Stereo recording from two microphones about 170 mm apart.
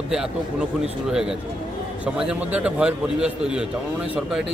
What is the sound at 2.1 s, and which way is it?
A man's voice, 5° right (ahead or behind).